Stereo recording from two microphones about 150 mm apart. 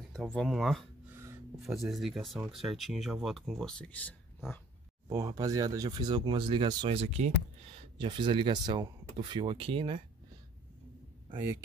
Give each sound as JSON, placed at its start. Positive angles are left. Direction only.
{"t": 0.1, "sound": "speech", "side_deg": 5}
{"t": 1.1, "sound": "a sound", "side_deg": -15}
{"t": 1.6, "sound": "speech", "side_deg": 0}
{"t": 5.1, "sound": "speech", "side_deg": -25}